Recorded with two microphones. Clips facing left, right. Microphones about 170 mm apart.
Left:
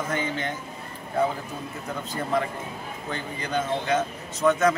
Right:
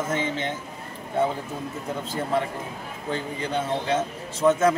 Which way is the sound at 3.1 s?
30° right (ahead or behind).